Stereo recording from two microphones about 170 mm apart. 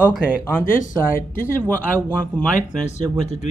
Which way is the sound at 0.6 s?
50° left (ahead or behind).